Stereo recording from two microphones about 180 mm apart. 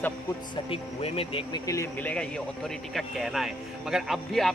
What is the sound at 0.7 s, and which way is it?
Speech, 30° left (ahead or behind).